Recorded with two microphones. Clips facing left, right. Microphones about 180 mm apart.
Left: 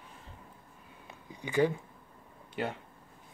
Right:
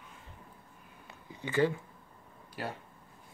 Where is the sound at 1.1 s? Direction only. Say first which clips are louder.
Right 1 dB; 15° left (ahead or behind).